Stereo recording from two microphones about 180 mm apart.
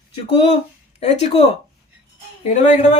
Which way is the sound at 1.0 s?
35° left (ahead or behind).